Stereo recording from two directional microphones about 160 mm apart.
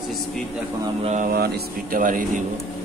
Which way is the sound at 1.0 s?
50° right (ahead or behind).